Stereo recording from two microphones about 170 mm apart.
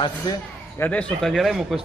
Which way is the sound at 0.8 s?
10° left (ahead or behind).